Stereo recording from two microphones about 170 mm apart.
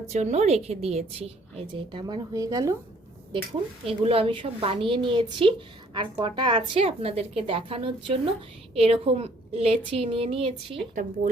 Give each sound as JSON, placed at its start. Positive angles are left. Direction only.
{"t": 0.1, "sound": "a woman's voice", "side_deg": -40}
{"t": 3.8, "sound": "a woman's voice", "side_deg": -35}